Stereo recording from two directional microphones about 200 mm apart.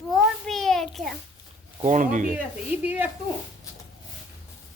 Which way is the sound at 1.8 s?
40° right (ahead or behind).